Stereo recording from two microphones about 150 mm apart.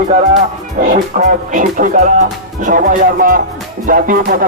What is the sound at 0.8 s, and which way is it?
Speech, 60° right (ahead or behind).